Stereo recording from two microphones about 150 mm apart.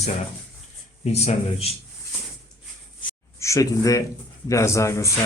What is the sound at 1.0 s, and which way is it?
Speech, 45° left (ahead or behind).